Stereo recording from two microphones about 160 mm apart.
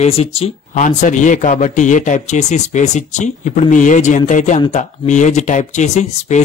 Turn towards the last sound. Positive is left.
turn(degrees=45)  # may be behind; listen again after turning